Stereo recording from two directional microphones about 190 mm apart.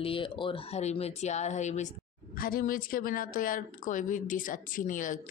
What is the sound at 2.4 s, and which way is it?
A woman's voice, 50° left (ahead or behind).